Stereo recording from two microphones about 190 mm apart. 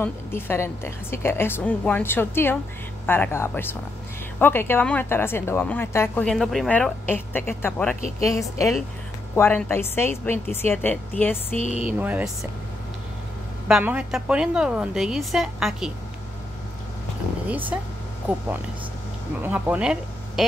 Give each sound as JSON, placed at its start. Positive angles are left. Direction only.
{"t": 0.0, "sound": "speech", "side_deg": 10}
{"t": 11.6, "sound": "speech", "side_deg": 35}
{"t": 12.0, "sound": "speech", "side_deg": -10}
{"t": 13.7, "sound": "a woman's voice", "side_deg": -5}
{"t": 17.5, "sound": "speech", "side_deg": -10}
{"t": 19.4, "sound": "speech", "side_deg": -10}